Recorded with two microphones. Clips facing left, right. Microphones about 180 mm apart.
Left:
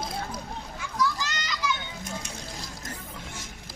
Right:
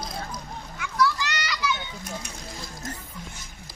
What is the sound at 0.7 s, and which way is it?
Children playing, 70° right (ahead or behind).